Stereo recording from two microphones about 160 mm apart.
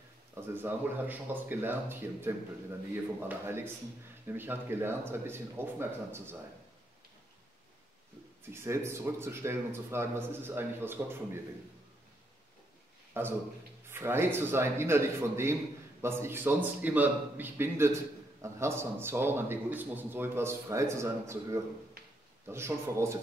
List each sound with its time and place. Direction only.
0.3 s a man's voice: 15° right (ahead or behind)
8.5 s a man's voice: 15° right (ahead or behind)
13.2 s a man's voice: 15° right (ahead or behind)